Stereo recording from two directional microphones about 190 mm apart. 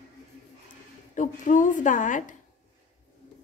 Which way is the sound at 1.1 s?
40° left (ahead or behind).